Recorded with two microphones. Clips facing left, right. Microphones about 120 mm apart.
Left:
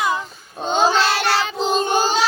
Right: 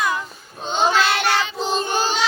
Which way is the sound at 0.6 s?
40° left (ahead or behind).